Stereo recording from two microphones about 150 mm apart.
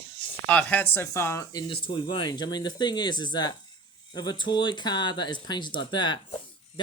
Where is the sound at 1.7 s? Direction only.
35° left (ahead or behind).